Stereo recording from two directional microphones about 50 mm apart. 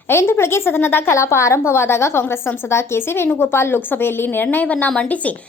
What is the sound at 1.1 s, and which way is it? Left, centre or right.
A woman's voice, left.